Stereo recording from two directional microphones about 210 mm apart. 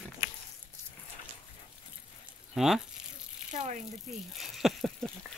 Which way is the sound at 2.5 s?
Centre (ahead or behind).